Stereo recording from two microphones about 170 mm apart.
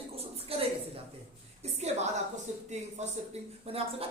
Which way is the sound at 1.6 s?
40° right (ahead or behind).